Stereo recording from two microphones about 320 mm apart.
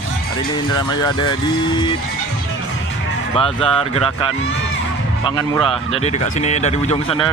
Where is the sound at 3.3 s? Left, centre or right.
Centre.